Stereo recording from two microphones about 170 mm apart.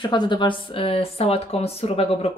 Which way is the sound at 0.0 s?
25° left (ahead or behind).